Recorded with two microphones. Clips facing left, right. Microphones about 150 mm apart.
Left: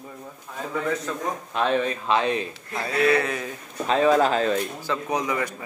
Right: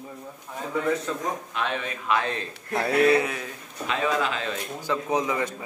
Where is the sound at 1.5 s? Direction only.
35° left (ahead or behind).